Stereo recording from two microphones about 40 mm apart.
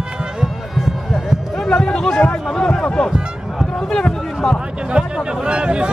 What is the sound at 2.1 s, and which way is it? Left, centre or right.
Speech, left.